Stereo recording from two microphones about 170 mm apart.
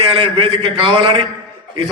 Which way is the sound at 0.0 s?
30° right (ahead or behind).